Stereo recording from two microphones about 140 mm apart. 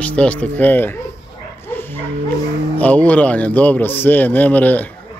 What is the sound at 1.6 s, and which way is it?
Bow-wow, 15° left (ahead or behind).